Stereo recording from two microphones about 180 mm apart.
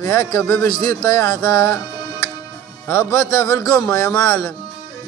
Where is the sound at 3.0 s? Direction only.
15° left (ahead or behind).